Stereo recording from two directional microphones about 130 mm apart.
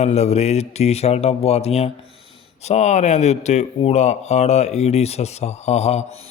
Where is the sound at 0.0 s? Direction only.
60° left (ahead or behind).